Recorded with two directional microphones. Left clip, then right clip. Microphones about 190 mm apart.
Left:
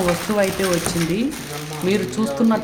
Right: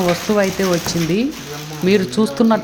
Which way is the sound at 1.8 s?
30° right (ahead or behind).